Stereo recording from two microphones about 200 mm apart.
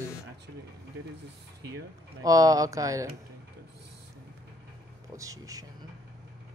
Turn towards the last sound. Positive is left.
turn(degrees=-15)  # may be behind; listen again after turning